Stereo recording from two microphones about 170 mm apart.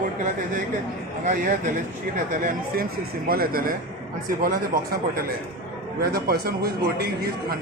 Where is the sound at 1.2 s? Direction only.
50° right (ahead or behind).